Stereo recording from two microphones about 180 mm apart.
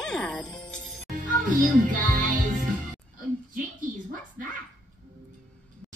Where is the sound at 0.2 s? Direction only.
5° left (ahead or behind).